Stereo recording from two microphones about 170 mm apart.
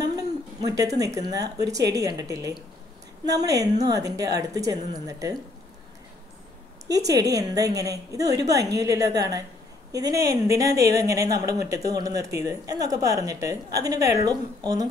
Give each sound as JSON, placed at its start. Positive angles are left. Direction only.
{"t": 0.0, "sound": "speech", "side_deg": -20}
{"t": 7.1, "sound": "speech", "side_deg": -20}